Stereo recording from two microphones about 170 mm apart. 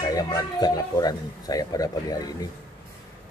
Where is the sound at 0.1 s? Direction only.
20° left (ahead or behind).